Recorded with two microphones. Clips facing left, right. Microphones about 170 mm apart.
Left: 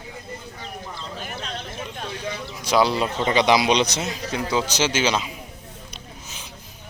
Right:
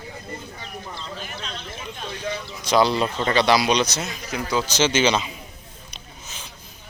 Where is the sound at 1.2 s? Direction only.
50° left (ahead or behind).